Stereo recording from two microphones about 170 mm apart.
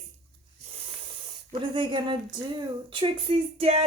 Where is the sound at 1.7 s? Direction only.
25° right (ahead or behind).